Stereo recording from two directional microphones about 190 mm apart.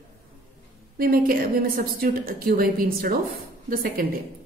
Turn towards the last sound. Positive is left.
turn(degrees=-50)  # may be behind; listen again after turning